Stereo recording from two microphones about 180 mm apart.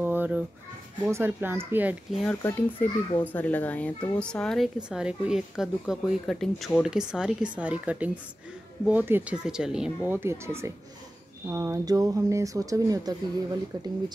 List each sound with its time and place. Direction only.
0.0 s children playing: 10° right (ahead or behind)
1.0 s speech: 10° right (ahead or behind)
2.4 s a child's voice: 10° left (ahead or behind); by 13.1 s 20° right (ahead or behind)